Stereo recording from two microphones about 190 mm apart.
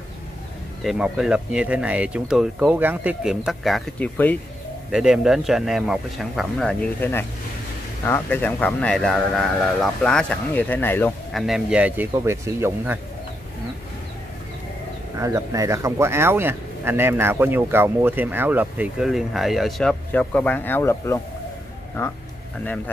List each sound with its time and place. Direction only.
0.8 s speech: 5° right (ahead or behind)
4.9 s speech: 5° right (ahead or behind)
11.3 s speech: centre (ahead or behind)
15.1 s speech: 15° right (ahead or behind); by 21.2 s 15° left (ahead or behind)